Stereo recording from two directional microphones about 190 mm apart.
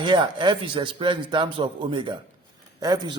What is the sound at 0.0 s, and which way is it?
A man's voice, 25° right (ahead or behind).